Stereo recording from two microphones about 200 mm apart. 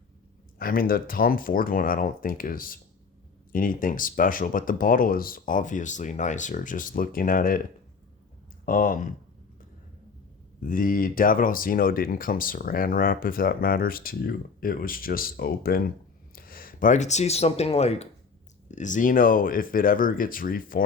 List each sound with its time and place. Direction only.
0.6 s speech: 45° left (ahead or behind)
8.6 s speech: 45° left (ahead or behind)
10.6 s speech: 45° left (ahead or behind)